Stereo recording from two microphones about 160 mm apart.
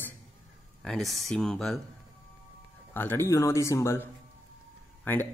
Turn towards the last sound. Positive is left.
turn(degrees=10)  # may be behind; listen again after turning